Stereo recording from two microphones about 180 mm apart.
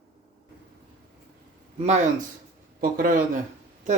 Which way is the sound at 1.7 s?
40° right (ahead or behind).